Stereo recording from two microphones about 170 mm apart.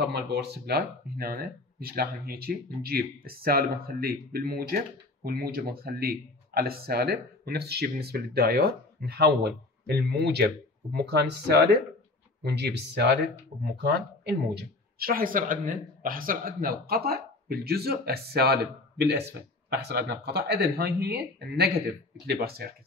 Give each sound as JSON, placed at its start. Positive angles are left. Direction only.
{"t": 0.0, "sound": "speech", "side_deg": -75}